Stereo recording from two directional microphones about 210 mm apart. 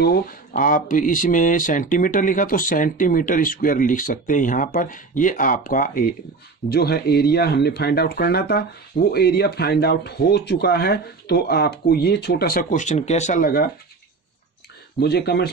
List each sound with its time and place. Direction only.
0.0 s speech: 45° left (ahead or behind)
15.0 s speech: 50° left (ahead or behind)